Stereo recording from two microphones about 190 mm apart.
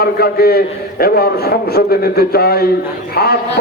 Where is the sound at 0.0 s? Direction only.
55° left (ahead or behind).